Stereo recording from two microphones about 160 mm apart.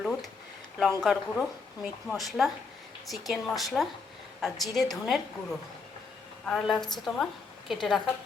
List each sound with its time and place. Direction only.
0.0 s a sound: centre (ahead or behind)
0.8 s a woman's voice: centre (ahead or behind)
6.4 s a woman's voice: 5° left (ahead or behind)